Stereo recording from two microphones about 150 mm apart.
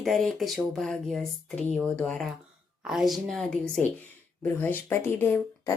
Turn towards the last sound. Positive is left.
turn(degrees=15)  # may be behind; listen again after turning